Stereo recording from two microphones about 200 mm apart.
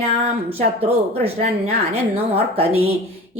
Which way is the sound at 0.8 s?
30° right (ahead or behind).